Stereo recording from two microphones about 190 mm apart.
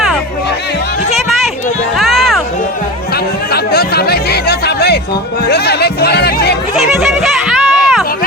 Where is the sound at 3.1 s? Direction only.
55° left (ahead or behind).